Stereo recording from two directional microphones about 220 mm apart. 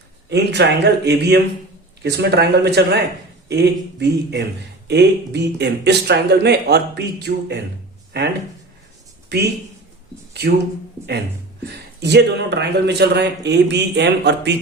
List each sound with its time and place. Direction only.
0.3 s a man's voice: 50° right (ahead or behind)
11.6 s a man's voice: 50° right (ahead or behind)